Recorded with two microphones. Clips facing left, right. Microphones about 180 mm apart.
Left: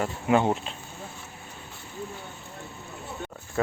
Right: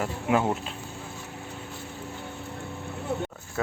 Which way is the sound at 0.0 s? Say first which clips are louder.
Left 2 dB; 5° right (ahead or behind).